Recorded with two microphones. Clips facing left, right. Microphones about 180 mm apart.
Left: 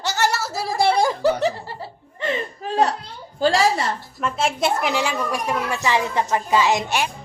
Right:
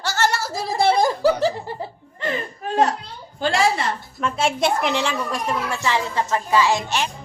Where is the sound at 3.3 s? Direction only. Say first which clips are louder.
Left 3 dB; 35° left (ahead or behind).